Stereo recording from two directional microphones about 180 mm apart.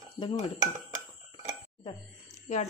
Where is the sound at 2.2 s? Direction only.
40° left (ahead or behind).